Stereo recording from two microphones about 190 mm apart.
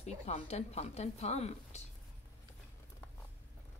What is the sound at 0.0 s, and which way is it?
A woman's voice, 35° left (ahead or behind).